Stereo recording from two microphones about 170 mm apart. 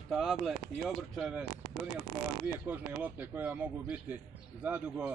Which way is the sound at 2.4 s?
10° right (ahead or behind).